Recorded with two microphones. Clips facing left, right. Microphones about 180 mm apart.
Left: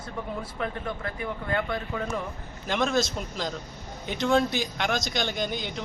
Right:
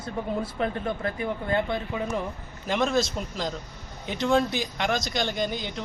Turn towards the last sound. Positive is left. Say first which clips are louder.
# right 1 dB
turn(degrees=0)  # may be behind; listen again after turning